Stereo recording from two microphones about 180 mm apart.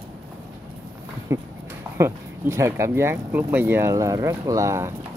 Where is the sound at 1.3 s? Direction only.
15° right (ahead or behind).